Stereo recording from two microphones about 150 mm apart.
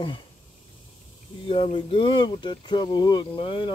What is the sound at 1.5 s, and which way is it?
Speech, 40° left (ahead or behind).